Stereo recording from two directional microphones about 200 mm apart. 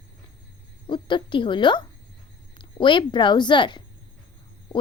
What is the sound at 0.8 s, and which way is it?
A child's voice, 25° left (ahead or behind).